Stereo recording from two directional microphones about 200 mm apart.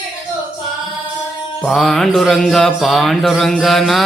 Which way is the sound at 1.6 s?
Centre (ahead or behind).